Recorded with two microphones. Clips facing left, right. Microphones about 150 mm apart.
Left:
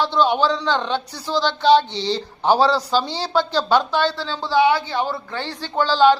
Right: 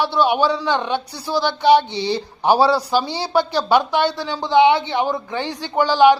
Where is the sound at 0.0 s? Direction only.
10° right (ahead or behind).